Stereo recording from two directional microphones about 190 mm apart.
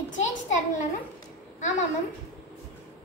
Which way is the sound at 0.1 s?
40° left (ahead or behind).